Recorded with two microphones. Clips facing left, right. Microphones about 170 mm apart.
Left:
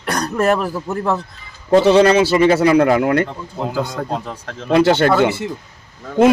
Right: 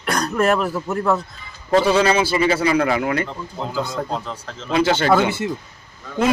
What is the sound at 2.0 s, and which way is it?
A man's voice, 70° left (ahead or behind).